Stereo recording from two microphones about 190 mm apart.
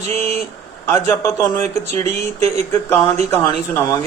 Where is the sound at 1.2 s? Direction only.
15° left (ahead or behind).